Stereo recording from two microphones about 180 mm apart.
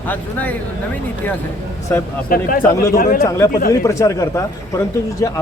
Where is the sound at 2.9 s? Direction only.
50° left (ahead or behind).